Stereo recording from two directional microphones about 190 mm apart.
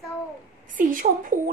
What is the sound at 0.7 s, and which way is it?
Speech, 45° right (ahead or behind).